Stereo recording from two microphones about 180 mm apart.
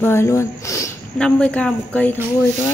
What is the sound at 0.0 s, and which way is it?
A woman's voice, 15° left (ahead or behind).